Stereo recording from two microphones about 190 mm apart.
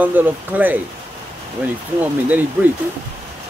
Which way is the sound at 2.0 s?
10° right (ahead or behind).